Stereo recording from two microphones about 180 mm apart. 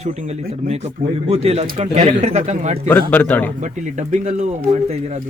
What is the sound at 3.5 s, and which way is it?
Speech, 40° right (ahead or behind).